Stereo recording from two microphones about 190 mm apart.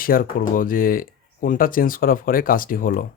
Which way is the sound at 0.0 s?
50° left (ahead or behind).